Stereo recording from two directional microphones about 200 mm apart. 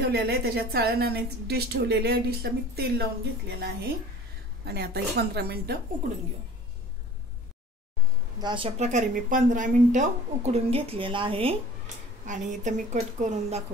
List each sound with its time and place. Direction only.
0.1 s a woman's voice: 50° right (ahead or behind)
8.4 s a woman's voice: 25° right (ahead or behind)
12.3 s a woman's voice: 40° right (ahead or behind)